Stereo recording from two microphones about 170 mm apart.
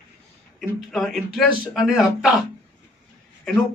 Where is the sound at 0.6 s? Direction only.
Centre (ahead or behind).